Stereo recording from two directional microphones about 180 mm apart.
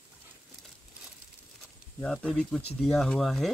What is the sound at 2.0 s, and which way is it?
Speech, 5° left (ahead or behind).